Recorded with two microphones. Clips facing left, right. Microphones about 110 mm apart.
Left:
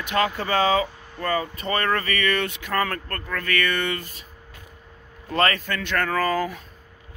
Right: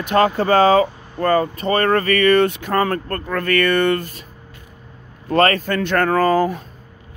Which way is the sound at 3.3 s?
45° right (ahead or behind).